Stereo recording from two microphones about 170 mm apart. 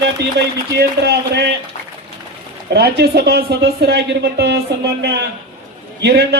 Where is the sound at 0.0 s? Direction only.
85° right.